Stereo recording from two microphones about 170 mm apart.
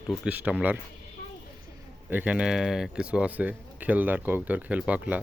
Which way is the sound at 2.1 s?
5° right (ahead or behind).